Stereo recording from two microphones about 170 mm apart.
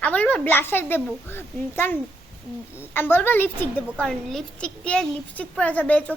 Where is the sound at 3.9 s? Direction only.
Centre (ahead or behind).